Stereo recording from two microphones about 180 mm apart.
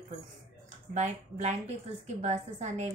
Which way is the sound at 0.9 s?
40° right (ahead or behind).